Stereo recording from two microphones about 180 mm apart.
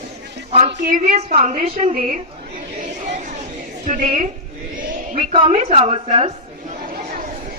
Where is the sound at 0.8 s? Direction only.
50° right (ahead or behind).